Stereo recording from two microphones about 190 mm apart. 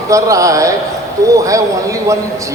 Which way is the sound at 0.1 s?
15° right (ahead or behind).